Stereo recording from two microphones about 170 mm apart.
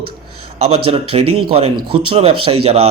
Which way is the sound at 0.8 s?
35° right (ahead or behind).